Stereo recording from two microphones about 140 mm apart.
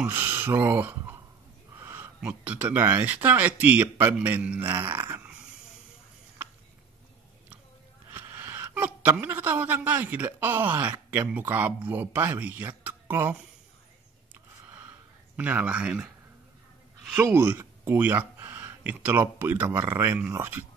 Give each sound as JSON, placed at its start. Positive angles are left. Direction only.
{"t": 0.0, "sound": "speech", "side_deg": -15}
{"t": 8.1, "sound": "a woman's voice", "side_deg": -15}
{"t": 15.3, "sound": "speech", "side_deg": -10}
{"t": 17.1, "sound": "speech", "side_deg": -15}